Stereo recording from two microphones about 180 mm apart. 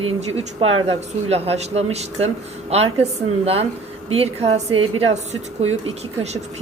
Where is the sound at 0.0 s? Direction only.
35° right (ahead or behind).